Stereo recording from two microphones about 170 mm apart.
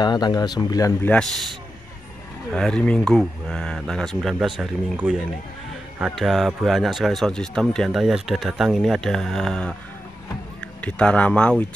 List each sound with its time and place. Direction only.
0.0 s speech: 25° left (ahead or behind)
1.0 s speech: 5° left (ahead or behind)
2.5 s speech: 5° left (ahead or behind)